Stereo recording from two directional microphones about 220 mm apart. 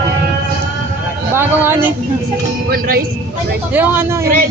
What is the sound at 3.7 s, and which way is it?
Speech, 10° right (ahead or behind).